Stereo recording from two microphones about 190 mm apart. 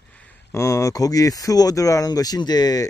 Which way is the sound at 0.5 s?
15° left (ahead or behind).